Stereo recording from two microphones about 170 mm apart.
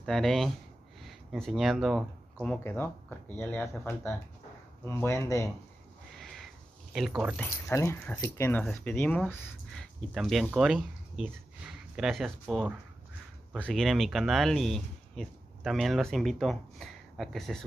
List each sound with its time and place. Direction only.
0.0 s speech: centre (ahead or behind); by 5.5 s 20° left (ahead or behind)
6.1 s a sound: centre (ahead or behind)
7.3 s speech: 15° left (ahead or behind)